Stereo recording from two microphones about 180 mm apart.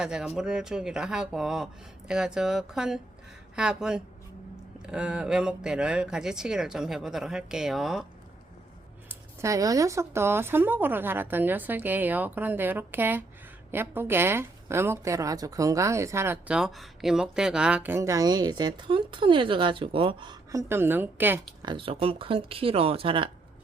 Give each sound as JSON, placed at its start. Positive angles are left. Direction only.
{"t": 0.0, "sound": "speech", "side_deg": -5}
{"t": 9.0, "sound": "a woman's voice", "side_deg": -15}
{"t": 21.6, "sound": "speech", "side_deg": -25}